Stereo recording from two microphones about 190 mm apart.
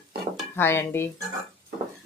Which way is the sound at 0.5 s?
10° left (ahead or behind).